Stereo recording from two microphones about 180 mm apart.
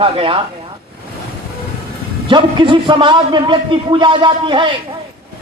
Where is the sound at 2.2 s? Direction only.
25° right (ahead or behind).